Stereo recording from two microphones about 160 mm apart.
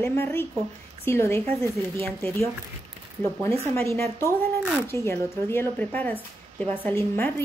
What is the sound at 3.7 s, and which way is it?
Speech, 15° left (ahead or behind).